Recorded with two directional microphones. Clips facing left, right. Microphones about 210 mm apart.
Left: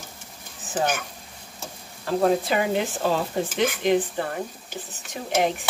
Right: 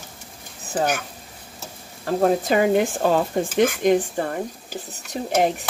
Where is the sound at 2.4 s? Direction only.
45° right (ahead or behind).